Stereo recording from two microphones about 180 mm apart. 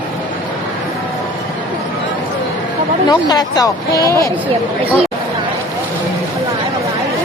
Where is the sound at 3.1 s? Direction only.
20° left (ahead or behind).